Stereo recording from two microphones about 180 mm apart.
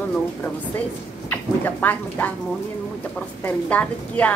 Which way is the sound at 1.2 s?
10° left (ahead or behind).